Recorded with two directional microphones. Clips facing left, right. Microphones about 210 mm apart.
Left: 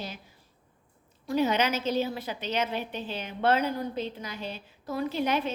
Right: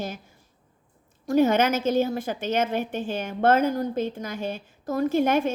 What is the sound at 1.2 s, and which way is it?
A woman's voice, 50° right (ahead or behind).